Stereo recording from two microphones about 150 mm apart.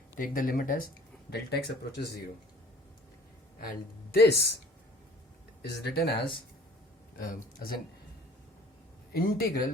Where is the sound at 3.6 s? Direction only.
85° left.